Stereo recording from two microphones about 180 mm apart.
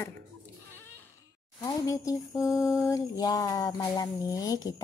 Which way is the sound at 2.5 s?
Centre (ahead or behind).